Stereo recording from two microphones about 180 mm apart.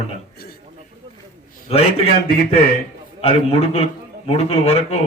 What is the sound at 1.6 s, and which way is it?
Speech, 35° left (ahead or behind).